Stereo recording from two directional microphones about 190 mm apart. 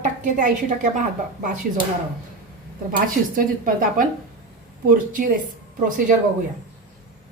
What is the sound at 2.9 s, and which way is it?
Speech, 45° right (ahead or behind).